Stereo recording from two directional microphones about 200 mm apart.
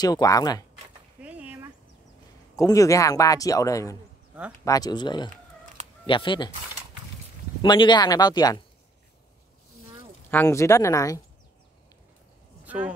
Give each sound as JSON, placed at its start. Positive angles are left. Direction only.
{"t": 0.0, "sound": "speech", "side_deg": 20}
{"t": 1.2, "sound": "a sound", "side_deg": -5}
{"t": 2.5, "sound": "speech", "side_deg": 15}
{"t": 7.6, "sound": "speech", "side_deg": 20}
{"t": 10.3, "sound": "speech", "side_deg": 15}
{"t": 12.6, "sound": "a sound", "side_deg": -5}